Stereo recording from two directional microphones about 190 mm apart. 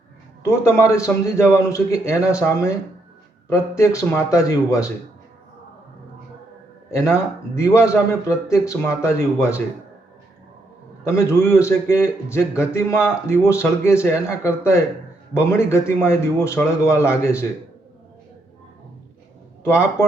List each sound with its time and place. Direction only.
0.4 s a man's voice: 15° left (ahead or behind)
7.1 s a man's voice: 15° left (ahead or behind)
11.0 s a man's voice: 15° left (ahead or behind)
19.6 s a man's voice: 15° left (ahead or behind)